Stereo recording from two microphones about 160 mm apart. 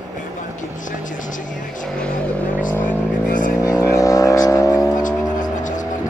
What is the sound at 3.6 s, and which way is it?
Vehicle, 20° left (ahead or behind).